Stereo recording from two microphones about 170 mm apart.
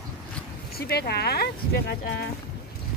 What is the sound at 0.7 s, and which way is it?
Speech, 65° left (ahead or behind).